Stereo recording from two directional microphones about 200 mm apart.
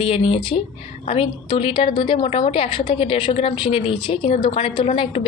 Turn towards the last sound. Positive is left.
turn(degrees=30)  # may be behind; listen again after turning